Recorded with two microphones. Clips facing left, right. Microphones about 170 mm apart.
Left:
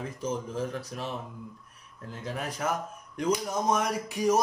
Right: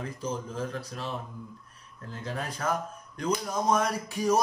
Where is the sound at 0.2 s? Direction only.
20° left (ahead or behind).